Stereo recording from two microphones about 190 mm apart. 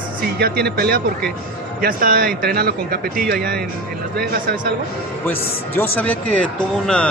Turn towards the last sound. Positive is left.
turn(degrees=5)  # may be behind; listen again after turning